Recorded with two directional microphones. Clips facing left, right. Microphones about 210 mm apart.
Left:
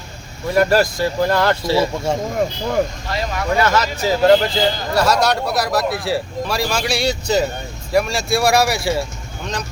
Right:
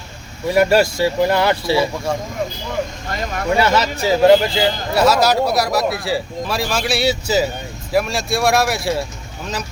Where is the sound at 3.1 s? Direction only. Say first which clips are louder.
Left 1 dB; 45° right (ahead or behind).